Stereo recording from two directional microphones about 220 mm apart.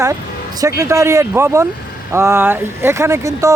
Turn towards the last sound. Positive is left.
turn(degrees=-15)  # may be behind; listen again after turning